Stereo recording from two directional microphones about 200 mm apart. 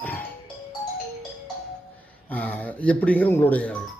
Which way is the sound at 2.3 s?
10° left (ahead or behind).